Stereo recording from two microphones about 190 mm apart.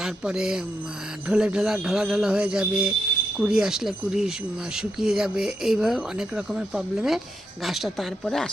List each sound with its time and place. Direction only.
0.0 s speech: 5° right (ahead or behind)